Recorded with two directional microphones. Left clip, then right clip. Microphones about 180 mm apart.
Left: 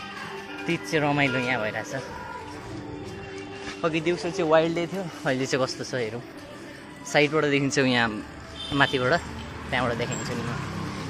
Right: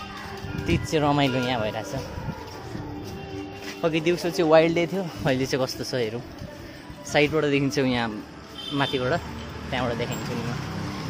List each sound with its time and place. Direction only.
0.7 s speech: 20° right (ahead or behind)
3.8 s speech: 30° right (ahead or behind)
5.4 s speech: 15° right (ahead or behind)
7.1 s speech: 15° right (ahead or behind)